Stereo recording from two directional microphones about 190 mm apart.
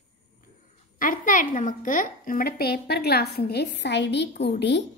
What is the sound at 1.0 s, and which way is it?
A woman's voice, 45° left (ahead or behind).